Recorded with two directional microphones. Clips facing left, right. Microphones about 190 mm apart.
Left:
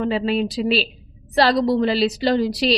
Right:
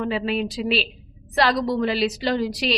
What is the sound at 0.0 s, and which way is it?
A woman's voice, 30° left (ahead or behind).